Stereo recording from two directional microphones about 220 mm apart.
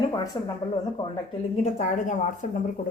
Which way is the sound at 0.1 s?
15° left (ahead or behind).